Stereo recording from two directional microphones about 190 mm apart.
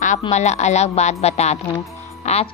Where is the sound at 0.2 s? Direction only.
35° left (ahead or behind).